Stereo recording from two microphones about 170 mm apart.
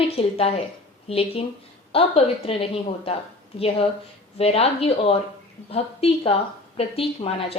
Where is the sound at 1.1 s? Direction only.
35° left (ahead or behind).